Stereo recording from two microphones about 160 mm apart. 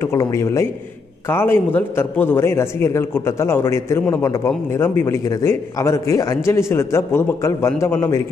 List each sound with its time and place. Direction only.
0.0 s a man's voice: 15° left (ahead or behind)